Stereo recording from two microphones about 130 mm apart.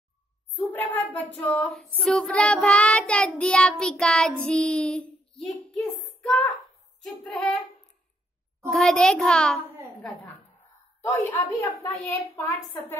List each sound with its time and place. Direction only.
0.6 s a sound: 20° left (ahead or behind)
2.0 s child singing: 5° left (ahead or behind)
5.4 s a child's voice: centre (ahead or behind)
8.6 s a child's voice: centre (ahead or behind)
11.1 s speech: 20° left (ahead or behind)
12.4 s child singing: 15° left (ahead or behind)